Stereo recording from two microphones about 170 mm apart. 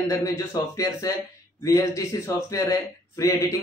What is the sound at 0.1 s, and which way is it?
Speech, 20° left (ahead or behind).